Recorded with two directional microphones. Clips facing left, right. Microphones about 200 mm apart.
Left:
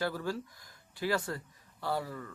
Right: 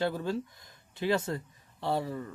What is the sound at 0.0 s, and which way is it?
A man's voice, 25° right (ahead or behind).